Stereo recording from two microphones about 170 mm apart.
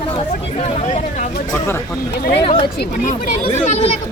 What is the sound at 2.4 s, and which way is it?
Speech, 30° left (ahead or behind).